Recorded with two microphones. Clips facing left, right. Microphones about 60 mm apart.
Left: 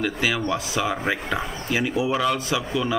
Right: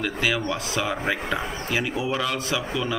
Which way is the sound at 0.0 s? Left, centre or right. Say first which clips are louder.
Left 1 dB; centre.